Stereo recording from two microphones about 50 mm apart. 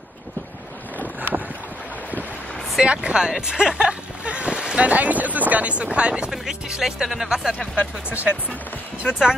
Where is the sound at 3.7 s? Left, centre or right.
Right.